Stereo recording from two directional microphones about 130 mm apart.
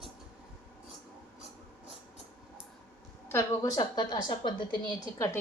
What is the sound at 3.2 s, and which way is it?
A woman's voice, 15° left (ahead or behind).